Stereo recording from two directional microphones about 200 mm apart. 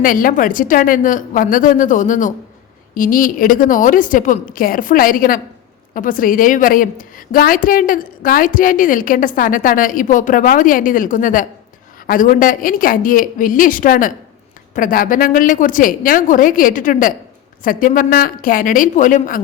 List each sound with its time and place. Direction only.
0.0 s a woman's voice: 45° left (ahead or behind)